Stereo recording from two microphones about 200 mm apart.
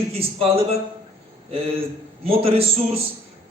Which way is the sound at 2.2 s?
30° right (ahead or behind).